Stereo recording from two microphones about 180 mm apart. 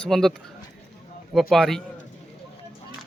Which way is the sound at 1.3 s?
Centre (ahead or behind).